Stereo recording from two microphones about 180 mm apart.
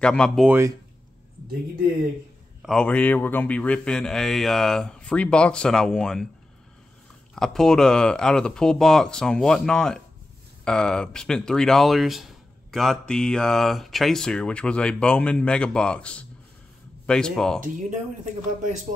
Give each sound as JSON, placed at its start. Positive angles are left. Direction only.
{"t": 0.0, "sound": "speech", "side_deg": 5}
{"t": 0.5, "sound": "speech", "side_deg": -15}
{"t": 2.6, "sound": "speech", "side_deg": 5}
{"t": 7.3, "sound": "speech", "side_deg": 0}
{"t": 17.6, "sound": "speech", "side_deg": -45}